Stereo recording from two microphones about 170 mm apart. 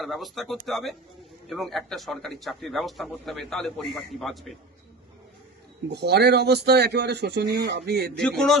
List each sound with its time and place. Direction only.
0.0 s a man's voice: centre (ahead or behind)
5.9 s a man's voice: 75° right (ahead or behind)
8.2 s a man's voice: centre (ahead or behind)